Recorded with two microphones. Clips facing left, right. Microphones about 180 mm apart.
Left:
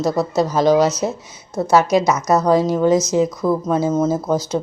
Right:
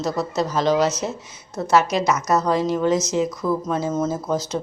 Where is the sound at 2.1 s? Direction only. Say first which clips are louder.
Left 4 dB; 35° left (ahead or behind).